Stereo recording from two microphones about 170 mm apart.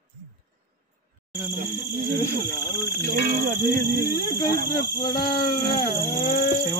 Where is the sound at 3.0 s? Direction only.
55° right (ahead or behind).